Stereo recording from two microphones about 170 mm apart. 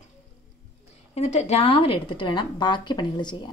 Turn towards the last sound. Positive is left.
turn(degrees=25)  # may be behind; listen again after turning